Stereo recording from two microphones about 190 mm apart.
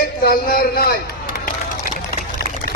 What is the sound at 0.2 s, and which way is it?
Speech, 55° left (ahead or behind).